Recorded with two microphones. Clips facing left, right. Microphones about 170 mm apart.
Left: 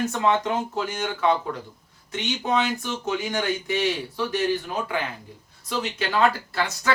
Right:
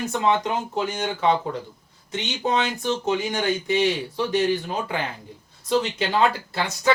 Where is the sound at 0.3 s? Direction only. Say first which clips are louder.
Right 1 dB; 15° right (ahead or behind).